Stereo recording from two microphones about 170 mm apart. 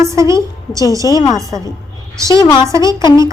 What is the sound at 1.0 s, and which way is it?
Speech, 20° left (ahead or behind).